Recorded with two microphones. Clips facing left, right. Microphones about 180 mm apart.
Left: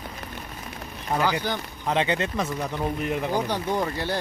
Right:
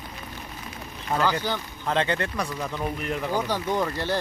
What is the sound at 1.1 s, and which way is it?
Speech, 15° left (ahead or behind).